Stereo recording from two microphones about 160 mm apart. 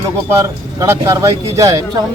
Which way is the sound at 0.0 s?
20° right (ahead or behind).